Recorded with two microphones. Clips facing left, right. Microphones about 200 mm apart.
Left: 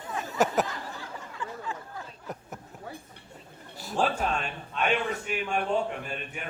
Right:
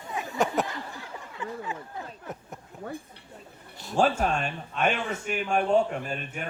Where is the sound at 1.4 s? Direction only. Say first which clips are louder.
Right 3 dB; 20° right (ahead or behind).